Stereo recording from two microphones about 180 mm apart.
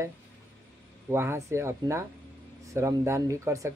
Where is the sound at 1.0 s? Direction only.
15° right (ahead or behind).